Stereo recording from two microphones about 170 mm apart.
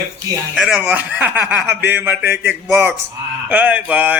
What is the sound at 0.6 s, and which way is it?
Speech, 5° right (ahead or behind).